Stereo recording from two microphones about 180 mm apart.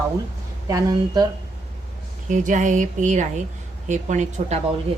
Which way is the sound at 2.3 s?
45° right (ahead or behind).